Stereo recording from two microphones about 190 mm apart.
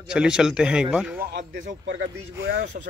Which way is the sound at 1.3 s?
65° right (ahead or behind).